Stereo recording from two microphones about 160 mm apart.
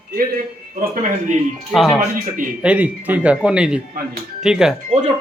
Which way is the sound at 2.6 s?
10° right (ahead or behind).